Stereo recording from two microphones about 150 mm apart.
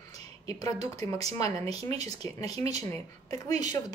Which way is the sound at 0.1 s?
25° left (ahead or behind).